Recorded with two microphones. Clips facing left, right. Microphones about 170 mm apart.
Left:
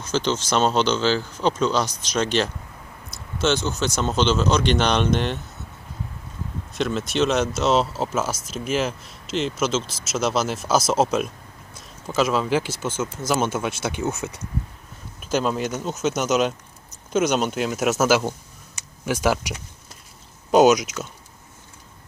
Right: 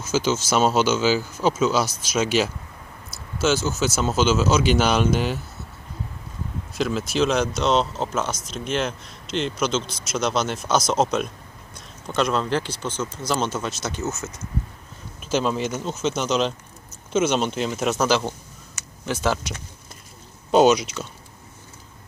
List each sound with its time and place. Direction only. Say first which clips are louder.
0.0 s speech: right 1 dB; 5° right (ahead or behind)
6.7 s speech: even; centre (ahead or behind); by 14.4 s 15° left (ahead or behind)
15.2 s speech: even; centre (ahead or behind)